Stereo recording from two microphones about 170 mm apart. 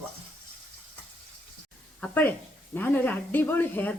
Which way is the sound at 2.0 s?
10° left (ahead or behind).